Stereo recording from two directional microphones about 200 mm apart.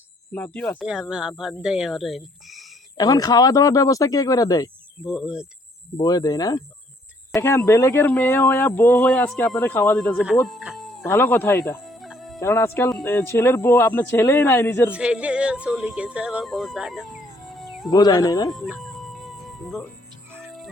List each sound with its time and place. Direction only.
0.3 s speech: 5° left (ahead or behind)
0.8 s speech: 5° right (ahead or behind)
3.0 s speech: 20° left (ahead or behind)
5.0 s speech: 5° right (ahead or behind)
6.0 s speech: 20° left (ahead or behind)
10.0 s speech: centre (ahead or behind)
10.4 s chicken: centre (ahead or behind)
11.0 s speech: 10° left (ahead or behind)
11.8 s fowl: centre (ahead or behind)
12.4 s speech: 10° left (ahead or behind)
14.9 s speech: 5° right (ahead or behind)
17.9 s speech: 20° left (ahead or behind)
18.5 s music: centre (ahead or behind)